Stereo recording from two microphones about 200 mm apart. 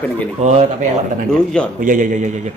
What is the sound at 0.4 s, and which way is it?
Speech, 35° right (ahead or behind).